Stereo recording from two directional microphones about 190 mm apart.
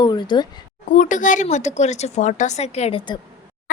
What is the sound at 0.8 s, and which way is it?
Speech, 40° left (ahead or behind).